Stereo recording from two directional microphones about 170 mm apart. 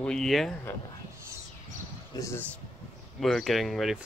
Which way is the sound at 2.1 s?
15° left (ahead or behind).